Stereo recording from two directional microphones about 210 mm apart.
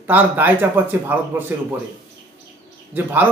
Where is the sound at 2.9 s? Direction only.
10° right (ahead or behind).